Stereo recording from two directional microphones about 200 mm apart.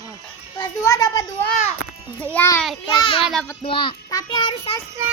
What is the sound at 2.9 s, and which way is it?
A child's voice, 25° left (ahead or behind).